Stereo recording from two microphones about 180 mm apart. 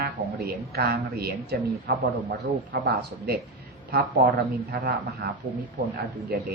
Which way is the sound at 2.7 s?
65° right (ahead or behind).